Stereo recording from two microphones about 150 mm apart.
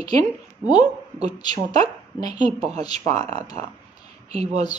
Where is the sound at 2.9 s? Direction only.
50° right (ahead or behind).